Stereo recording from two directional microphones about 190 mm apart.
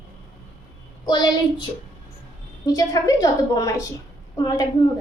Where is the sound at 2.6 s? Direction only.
20° left (ahead or behind).